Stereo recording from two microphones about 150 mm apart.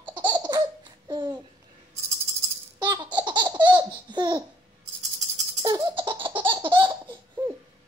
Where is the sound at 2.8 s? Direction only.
30° right (ahead or behind).